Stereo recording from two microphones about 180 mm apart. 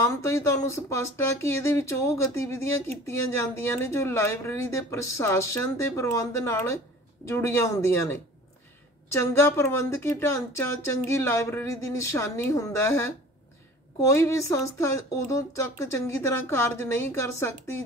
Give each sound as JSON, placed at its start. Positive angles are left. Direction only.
{"t": 0.0, "sound": "speech", "side_deg": 15}